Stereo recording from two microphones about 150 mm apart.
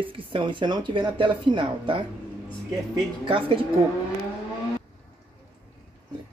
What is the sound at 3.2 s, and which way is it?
Speech, 35° right (ahead or behind).